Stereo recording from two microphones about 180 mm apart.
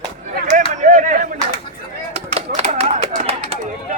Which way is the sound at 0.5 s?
45° right (ahead or behind).